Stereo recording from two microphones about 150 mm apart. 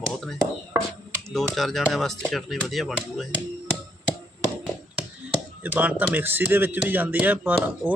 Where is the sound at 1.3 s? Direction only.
Centre (ahead or behind).